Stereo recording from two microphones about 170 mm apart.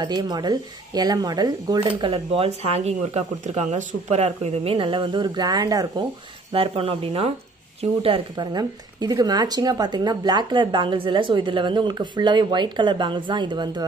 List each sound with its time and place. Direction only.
0.0 s speech: 25° right (ahead or behind)
6.5 s speech: 35° right (ahead or behind)